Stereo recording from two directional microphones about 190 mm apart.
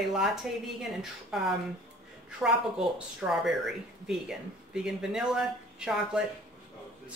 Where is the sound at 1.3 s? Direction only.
Centre (ahead or behind).